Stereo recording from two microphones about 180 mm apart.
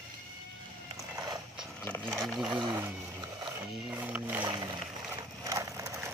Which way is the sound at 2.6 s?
15° right (ahead or behind).